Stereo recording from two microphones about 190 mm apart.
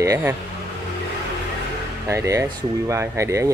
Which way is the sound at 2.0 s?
15° right (ahead or behind).